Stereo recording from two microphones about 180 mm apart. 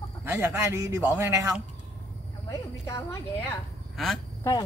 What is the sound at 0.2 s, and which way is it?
Speech, 10° right (ahead or behind).